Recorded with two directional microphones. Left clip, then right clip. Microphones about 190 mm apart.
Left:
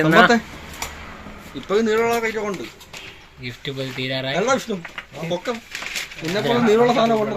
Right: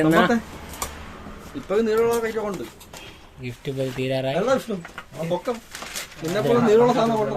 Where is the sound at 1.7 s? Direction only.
25° left (ahead or behind).